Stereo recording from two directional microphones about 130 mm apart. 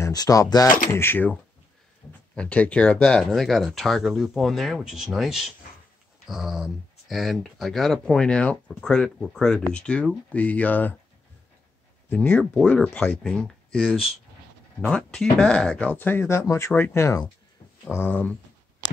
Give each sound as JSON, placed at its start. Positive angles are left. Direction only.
{"t": 0.0, "sound": "speech", "side_deg": 30}
{"t": 0.9, "sound": "speech", "side_deg": 15}
{"t": 12.1, "sound": "speech", "side_deg": 10}
{"t": 14.8, "sound": "speech", "side_deg": 5}